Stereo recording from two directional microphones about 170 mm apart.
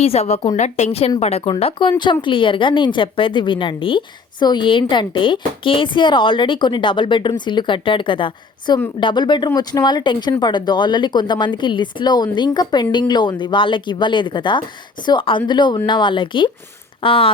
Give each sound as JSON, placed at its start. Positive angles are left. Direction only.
{"t": 0.0, "sound": "a woman's voice", "side_deg": 35}